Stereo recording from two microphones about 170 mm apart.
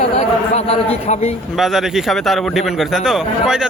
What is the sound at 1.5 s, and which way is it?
A man's voice, centre (ahead or behind).